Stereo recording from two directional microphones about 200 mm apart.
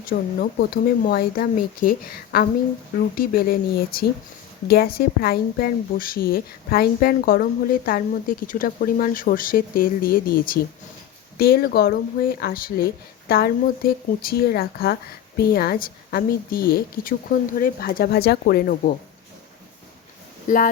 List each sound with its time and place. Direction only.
0.1 s a woman's voice: 45° left (ahead or behind)
20.5 s speech: 40° left (ahead or behind)